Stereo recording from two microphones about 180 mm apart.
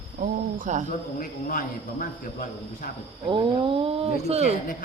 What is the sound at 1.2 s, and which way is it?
A man's voice, 50° left (ahead or behind).